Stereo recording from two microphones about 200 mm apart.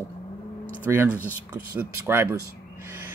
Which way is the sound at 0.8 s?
10° right (ahead or behind).